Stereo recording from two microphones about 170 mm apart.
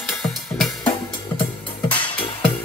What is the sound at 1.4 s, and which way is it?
Music, 30° left (ahead or behind).